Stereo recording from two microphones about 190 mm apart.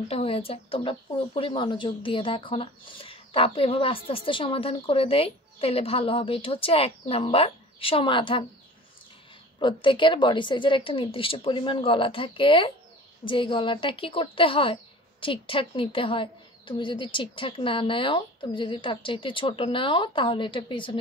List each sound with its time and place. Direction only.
0.1 s speech: 30° left (ahead or behind)
9.6 s speech: 25° left (ahead or behind)